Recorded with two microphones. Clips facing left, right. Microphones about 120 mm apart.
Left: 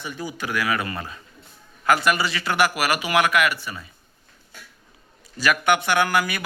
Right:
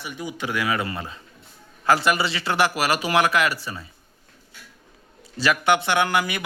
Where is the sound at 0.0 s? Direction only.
15° right (ahead or behind); by 3.8 s 30° right (ahead or behind).